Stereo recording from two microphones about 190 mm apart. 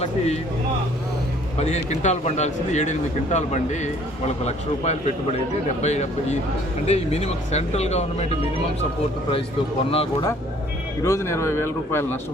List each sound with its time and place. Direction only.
1.5 s speech: 35° left (ahead or behind)
9.9 s speech: 30° left (ahead or behind)
11.0 s speech: 15° left (ahead or behind)